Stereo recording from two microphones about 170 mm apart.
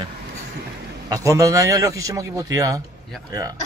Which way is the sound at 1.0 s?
20° right (ahead or behind).